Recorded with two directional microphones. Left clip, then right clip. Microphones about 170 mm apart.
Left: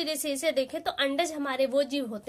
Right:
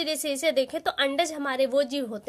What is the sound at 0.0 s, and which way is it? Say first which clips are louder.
A woman's voice: right 3 dB; 30° right (ahead or behind).